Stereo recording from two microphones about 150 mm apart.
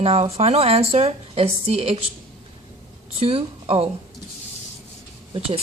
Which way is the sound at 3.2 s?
40° right (ahead or behind).